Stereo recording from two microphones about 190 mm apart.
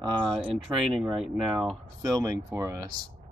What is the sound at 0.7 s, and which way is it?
Speech, centre (ahead or behind).